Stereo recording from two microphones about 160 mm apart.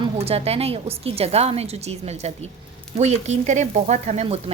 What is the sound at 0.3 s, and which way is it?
A woman's voice, 40° right (ahead or behind).